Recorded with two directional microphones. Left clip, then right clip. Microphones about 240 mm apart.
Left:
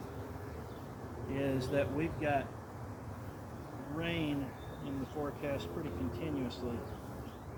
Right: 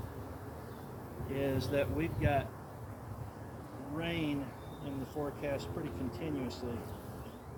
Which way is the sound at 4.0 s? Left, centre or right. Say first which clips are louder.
Even; centre.